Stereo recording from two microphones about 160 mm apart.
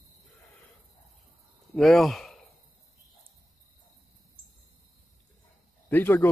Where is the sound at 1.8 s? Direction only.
Centre (ahead or behind).